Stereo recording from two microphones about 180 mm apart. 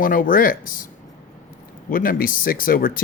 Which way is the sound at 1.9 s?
50° left (ahead or behind).